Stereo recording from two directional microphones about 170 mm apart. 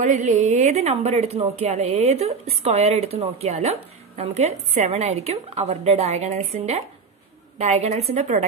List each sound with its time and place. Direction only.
0.0 s a woman's voice: 45° right (ahead or behind)